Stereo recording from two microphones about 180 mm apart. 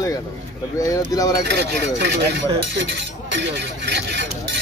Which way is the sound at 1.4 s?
70° right (ahead or behind).